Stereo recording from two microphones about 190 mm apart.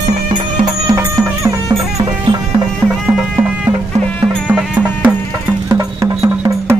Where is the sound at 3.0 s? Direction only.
5° right (ahead or behind).